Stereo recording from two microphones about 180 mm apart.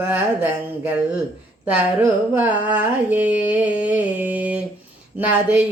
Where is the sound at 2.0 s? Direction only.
10° right (ahead or behind).